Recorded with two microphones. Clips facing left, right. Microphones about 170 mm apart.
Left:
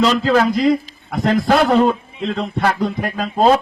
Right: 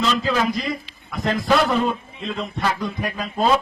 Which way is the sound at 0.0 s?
60° left (ahead or behind).